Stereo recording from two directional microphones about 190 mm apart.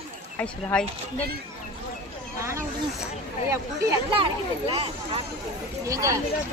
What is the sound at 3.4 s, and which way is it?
Speech, 15° right (ahead or behind).